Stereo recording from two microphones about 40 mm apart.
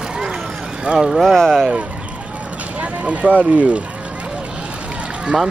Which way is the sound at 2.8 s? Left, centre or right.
Right.